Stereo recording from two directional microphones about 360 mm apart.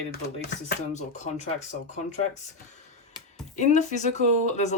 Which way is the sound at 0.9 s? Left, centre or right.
Centre.